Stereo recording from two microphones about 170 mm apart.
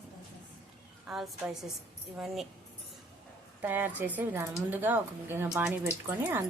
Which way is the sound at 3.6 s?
10° right (ahead or behind).